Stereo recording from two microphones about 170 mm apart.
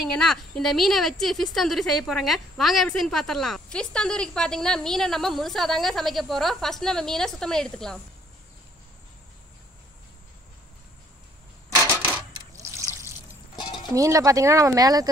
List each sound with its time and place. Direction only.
0.0 s a woman's voice: centre (ahead or behind)
12.3 s water: 20° right (ahead or behind)
13.3 s music: 25° left (ahead or behind)
13.9 s speech: 20° right (ahead or behind)